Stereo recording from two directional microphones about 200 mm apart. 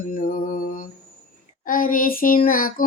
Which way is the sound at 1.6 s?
45° left (ahead or behind).